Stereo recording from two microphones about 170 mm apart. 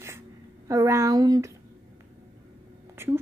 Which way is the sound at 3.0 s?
15° right (ahead or behind).